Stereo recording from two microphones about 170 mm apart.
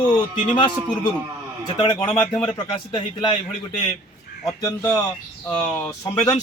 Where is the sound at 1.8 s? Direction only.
25° left (ahead or behind).